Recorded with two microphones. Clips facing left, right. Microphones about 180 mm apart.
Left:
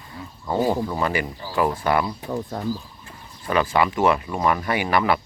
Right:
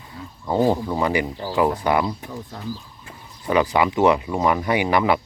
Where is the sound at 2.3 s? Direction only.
50° left (ahead or behind).